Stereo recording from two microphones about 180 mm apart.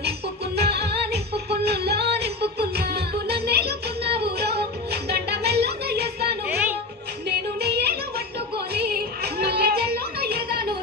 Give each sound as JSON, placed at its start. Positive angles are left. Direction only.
{"t": 0.6, "sound": "music", "side_deg": -60}
{"t": 5.1, "sound": "a sound", "side_deg": -65}
{"t": 7.6, "sound": "music", "side_deg": -65}